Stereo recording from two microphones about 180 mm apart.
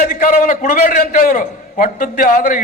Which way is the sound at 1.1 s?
50° left (ahead or behind).